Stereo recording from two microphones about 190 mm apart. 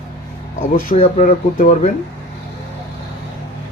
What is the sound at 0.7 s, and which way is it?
Speech, 45° left (ahead or behind).